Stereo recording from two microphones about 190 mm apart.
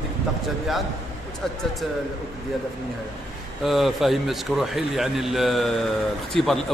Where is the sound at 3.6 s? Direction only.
Centre (ahead or behind).